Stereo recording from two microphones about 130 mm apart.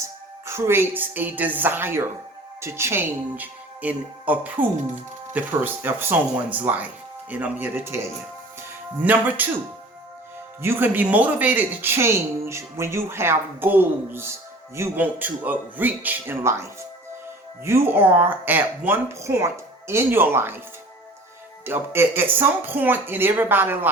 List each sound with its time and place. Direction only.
0.0 s a woman's voice: 20° right (ahead or behind)
9.0 s a woman's voice: 15° right (ahead or behind)
10.6 s a woman's voice: 15° right (ahead or behind)
21.6 s a woman's voice: 15° right (ahead or behind)